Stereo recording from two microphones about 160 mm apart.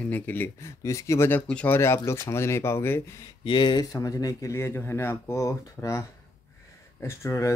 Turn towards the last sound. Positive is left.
turn(degrees=15)  # may be behind; listen again after turning